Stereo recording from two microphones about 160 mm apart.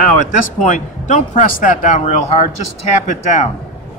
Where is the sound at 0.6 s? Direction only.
50° left (ahead or behind).